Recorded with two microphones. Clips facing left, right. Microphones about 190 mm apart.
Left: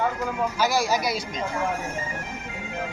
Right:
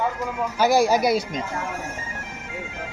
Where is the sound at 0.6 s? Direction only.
55° right (ahead or behind).